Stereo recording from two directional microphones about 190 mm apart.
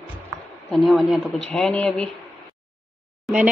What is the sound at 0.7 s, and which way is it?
Speech, centre (ahead or behind).